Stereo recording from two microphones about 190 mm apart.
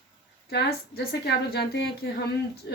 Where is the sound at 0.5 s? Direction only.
60° left (ahead or behind).